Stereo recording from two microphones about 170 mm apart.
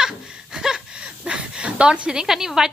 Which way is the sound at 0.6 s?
5° right (ahead or behind).